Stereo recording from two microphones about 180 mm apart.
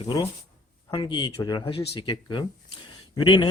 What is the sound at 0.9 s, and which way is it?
Speech, 25° left (ahead or behind).